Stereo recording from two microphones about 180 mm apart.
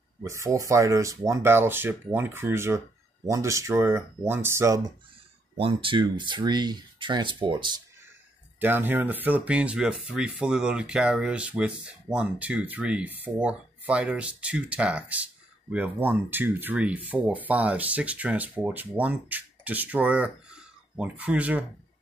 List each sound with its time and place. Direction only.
0.2 s speech: 15° right (ahead or behind)
5.6 s speech: 30° right (ahead or behind)
8.5 s speech: 10° right (ahead or behind)